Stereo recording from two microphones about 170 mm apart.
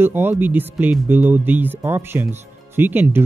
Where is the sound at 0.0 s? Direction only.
10° right (ahead or behind).